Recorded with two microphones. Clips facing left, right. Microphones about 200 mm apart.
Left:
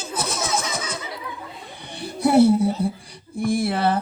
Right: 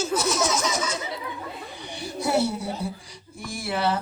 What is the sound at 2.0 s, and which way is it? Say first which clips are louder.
A child's voice: left 8 dB; 55° left (ahead or behind).